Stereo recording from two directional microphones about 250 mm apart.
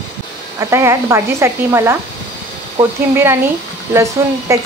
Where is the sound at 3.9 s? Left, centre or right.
Centre.